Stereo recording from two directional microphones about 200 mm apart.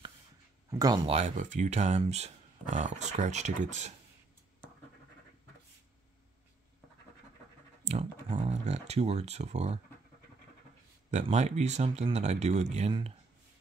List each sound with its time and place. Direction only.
0.7 s speech: 20° right (ahead or behind)
1.1 s speech: 35° right (ahead or behind)
7.8 s a sound: 30° right (ahead or behind)
11.1 s speech: 35° right (ahead or behind)